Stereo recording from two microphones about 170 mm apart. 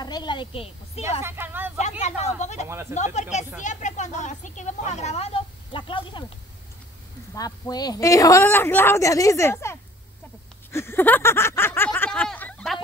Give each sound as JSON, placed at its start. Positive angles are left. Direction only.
{"t": 0.0, "sound": "a woman's voice", "side_deg": 25}
{"t": 1.2, "sound": "speech", "side_deg": -15}
{"t": 1.8, "sound": "speech", "side_deg": 40}
{"t": 7.3, "sound": "speech", "side_deg": 20}
{"t": 10.7, "sound": "a sound", "side_deg": 15}